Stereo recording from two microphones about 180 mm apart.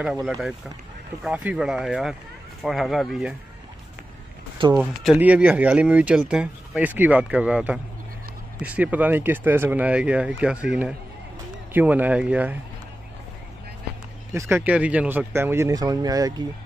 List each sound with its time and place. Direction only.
0.0 s speech: centre (ahead or behind)
4.7 s speech: 5° right (ahead or behind)
14.3 s speech: 15° right (ahead or behind)